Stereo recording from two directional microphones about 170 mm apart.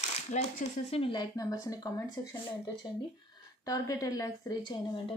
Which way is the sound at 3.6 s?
20° left (ahead or behind).